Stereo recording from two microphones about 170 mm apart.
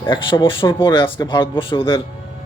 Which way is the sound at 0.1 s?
30° left (ahead or behind).